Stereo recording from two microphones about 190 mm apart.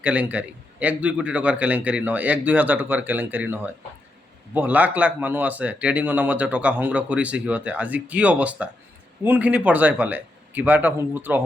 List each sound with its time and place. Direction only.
0.0 s speech: 5° right (ahead or behind)